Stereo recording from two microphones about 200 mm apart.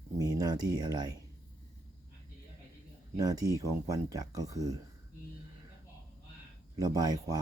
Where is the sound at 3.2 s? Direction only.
20° right (ahead or behind).